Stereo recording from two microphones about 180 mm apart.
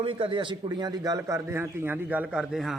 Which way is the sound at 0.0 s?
30° right (ahead or behind).